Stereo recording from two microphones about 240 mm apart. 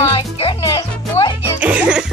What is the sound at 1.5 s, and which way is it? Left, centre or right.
Music, centre.